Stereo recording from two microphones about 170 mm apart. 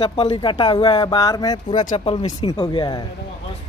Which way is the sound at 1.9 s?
35° left (ahead or behind).